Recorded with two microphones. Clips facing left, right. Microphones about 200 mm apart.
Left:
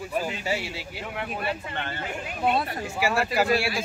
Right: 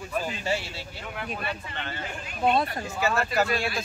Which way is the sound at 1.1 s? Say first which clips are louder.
Left 3 dB; 25° left (ahead or behind).